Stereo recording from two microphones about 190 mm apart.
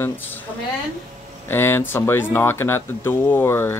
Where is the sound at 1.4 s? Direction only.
10° left (ahead or behind).